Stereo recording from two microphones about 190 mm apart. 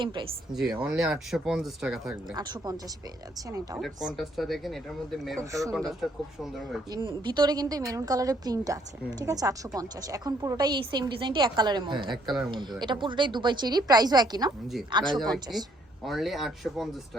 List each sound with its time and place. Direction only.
0.0 s a woman's voice: 25° right (ahead or behind)
0.9 s speech: centre (ahead or behind)
2.3 s a woman's voice: 20° right (ahead or behind)
3.8 s speech: centre (ahead or behind)
5.4 s speech: 15° right (ahead or behind)
5.9 s speech: centre (ahead or behind)
6.9 s a woman's voice: 20° right (ahead or behind)
12.1 s speech: centre (ahead or behind)
12.5 s a woman's voice: 25° right (ahead or behind)
15.5 s speech: centre (ahead or behind)